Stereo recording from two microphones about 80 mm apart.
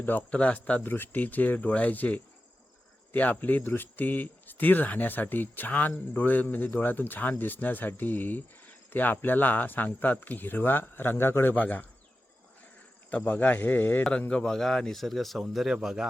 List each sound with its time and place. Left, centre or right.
0.0 s speech: left
11.5 s speech: centre
13.1 s speech: left
14.0 s speech: centre